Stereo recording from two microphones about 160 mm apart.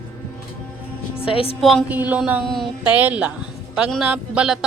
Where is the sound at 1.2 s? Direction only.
35° left (ahead or behind).